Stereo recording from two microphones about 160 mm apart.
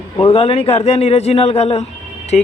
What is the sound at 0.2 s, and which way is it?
A man's voice, 35° left (ahead or behind).